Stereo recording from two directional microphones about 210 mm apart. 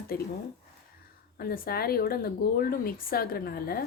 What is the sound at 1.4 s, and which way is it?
A woman's voice, 45° left (ahead or behind).